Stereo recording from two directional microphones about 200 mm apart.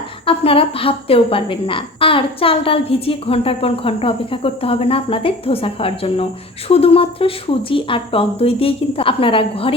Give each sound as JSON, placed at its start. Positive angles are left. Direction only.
{"t": 0.3, "sound": "a woman's voice", "side_deg": 30}